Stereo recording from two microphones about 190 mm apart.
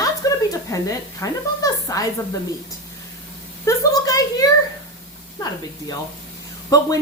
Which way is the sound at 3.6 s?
20° left (ahead or behind).